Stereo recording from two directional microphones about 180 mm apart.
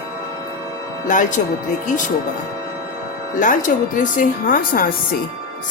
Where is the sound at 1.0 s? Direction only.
45° left (ahead or behind).